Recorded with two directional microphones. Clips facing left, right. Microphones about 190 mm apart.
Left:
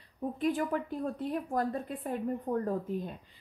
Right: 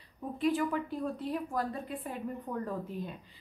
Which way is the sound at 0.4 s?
45° left (ahead or behind).